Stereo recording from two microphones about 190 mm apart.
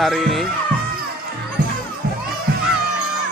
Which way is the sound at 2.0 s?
60° right (ahead or behind).